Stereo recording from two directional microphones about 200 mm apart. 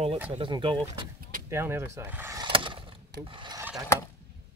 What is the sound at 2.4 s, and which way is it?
Skateboard, 25° right (ahead or behind).